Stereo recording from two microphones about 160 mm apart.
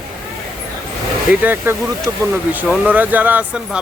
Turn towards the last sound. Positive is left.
turn(degrees=-10)  # may be behind; listen again after turning